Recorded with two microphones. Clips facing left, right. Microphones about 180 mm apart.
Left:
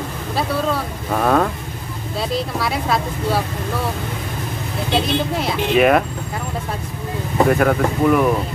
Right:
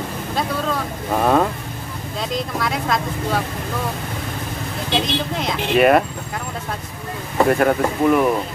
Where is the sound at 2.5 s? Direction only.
5° left (ahead or behind).